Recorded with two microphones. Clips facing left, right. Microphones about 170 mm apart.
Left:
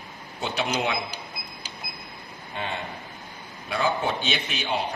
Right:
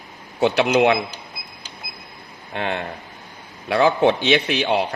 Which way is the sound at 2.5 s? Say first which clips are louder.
Right 7 dB; 65° right (ahead or behind).